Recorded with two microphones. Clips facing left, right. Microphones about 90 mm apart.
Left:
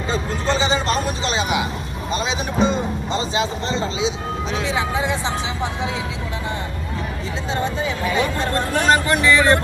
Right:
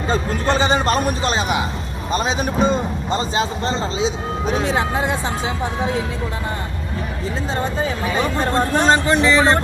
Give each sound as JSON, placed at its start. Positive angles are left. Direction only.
{"t": 0.1, "sound": "vehicle", "side_deg": -55}
{"t": 2.1, "sound": "a sound", "side_deg": -45}
{"t": 4.5, "sound": "music", "side_deg": -50}
{"t": 7.5, "sound": "speech", "side_deg": -40}
{"t": 8.8, "sound": "speech", "side_deg": -25}